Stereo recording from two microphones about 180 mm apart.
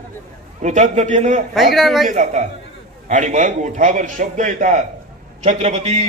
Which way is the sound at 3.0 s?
40° right (ahead or behind).